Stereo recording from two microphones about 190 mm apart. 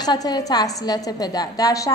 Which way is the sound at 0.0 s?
20° left (ahead or behind).